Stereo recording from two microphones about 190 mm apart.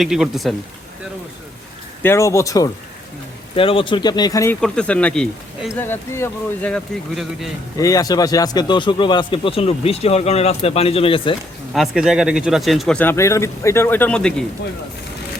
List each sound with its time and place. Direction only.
0.0 s speech: centre (ahead or behind)
2.0 s speech: 15° left (ahead or behind)
3.5 s speech: 30° left (ahead or behind)
4.6 s speech: 5° left (ahead or behind)
7.8 s speech: 20° left (ahead or behind)
11.7 s speech: centre (ahead or behind)